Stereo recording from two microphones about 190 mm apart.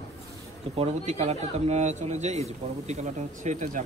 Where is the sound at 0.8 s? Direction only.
35° right (ahead or behind).